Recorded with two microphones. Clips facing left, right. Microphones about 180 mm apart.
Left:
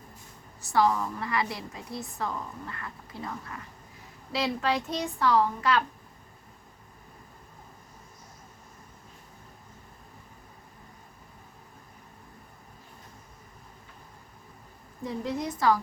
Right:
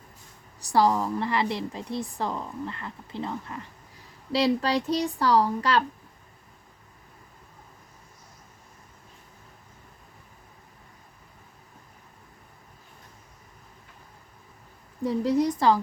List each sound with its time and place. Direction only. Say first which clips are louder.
0.6 s a woman's voice: right 3 dB; 35° right (ahead or behind)
15.0 s speech: right 8 dB; 35° right (ahead or behind)